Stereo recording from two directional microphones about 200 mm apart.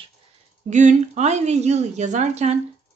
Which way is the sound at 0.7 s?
40° right (ahead or behind).